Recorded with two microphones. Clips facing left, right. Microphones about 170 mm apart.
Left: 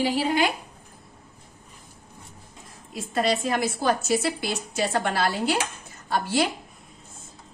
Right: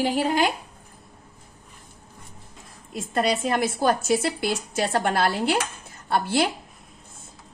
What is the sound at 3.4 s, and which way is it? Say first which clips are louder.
A woman's voice: right 2 dB; 50° right (ahead or behind).